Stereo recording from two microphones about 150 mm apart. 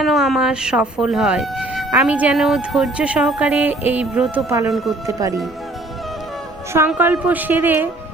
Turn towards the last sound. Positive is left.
turn(degrees=-15)  # may be behind; listen again after turning